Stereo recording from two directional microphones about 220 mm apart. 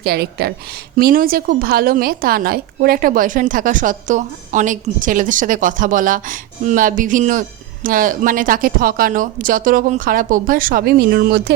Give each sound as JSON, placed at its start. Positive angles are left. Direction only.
{"t": 0.0, "sound": "a woman's voice", "side_deg": -45}